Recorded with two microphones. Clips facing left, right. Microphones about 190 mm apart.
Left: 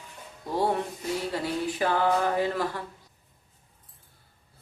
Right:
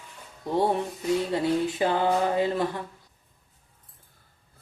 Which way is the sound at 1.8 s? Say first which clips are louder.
Left 3 dB; 20° right (ahead or behind).